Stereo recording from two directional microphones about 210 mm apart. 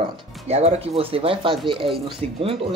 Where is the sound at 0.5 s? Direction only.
30° right (ahead or behind).